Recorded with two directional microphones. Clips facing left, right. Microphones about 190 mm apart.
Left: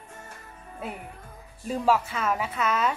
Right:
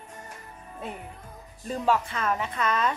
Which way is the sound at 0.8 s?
10° left (ahead or behind).